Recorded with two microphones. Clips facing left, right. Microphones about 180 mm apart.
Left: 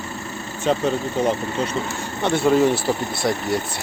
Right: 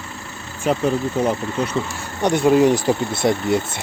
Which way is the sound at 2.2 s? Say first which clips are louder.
Right 2 dB; 15° right (ahead or behind).